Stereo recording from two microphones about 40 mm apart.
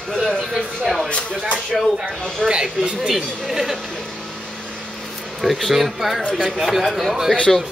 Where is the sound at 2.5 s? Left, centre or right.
Right.